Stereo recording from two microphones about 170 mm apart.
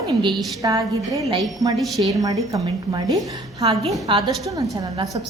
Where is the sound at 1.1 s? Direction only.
20° right (ahead or behind).